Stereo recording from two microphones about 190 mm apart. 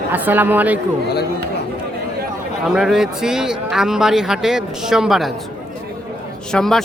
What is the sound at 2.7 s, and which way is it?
A man's voice, 5° right (ahead or behind).